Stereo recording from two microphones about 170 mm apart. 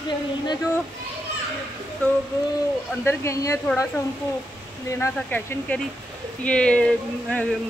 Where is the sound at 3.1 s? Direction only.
15° left (ahead or behind).